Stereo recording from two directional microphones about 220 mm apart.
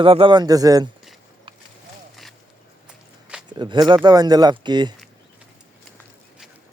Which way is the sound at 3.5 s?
20° right (ahead or behind).